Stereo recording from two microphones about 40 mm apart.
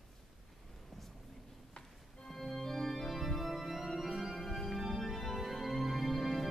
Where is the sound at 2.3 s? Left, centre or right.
Centre.